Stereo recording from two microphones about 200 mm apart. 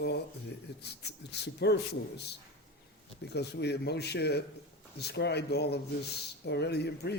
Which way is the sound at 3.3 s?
55° left (ahead or behind).